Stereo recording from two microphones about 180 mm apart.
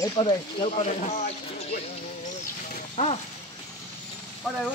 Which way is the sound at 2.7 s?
40° left (ahead or behind).